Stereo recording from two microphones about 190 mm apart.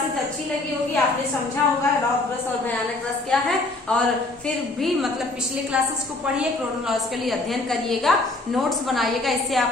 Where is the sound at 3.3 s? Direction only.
5° left (ahead or behind).